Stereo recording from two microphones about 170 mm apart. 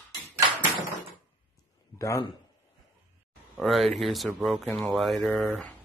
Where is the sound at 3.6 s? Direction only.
Centre (ahead or behind).